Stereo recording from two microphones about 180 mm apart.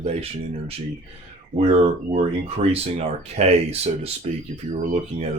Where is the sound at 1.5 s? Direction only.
35° right (ahead or behind).